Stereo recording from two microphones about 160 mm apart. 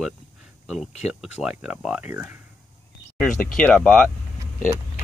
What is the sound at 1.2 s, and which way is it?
Speech, 5° right (ahead or behind).